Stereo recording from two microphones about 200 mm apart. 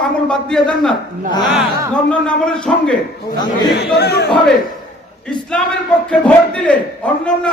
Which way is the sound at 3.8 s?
55° left (ahead or behind).